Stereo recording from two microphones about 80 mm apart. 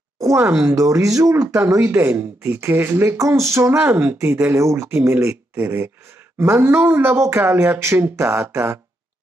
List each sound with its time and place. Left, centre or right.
0.4 s speech: centre
0.7 s speech: right
1.6 s speech: right